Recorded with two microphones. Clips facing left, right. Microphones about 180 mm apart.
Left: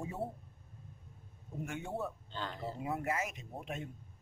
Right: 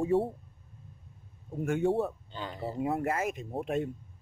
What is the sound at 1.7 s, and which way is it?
Speech, 65° right (ahead or behind).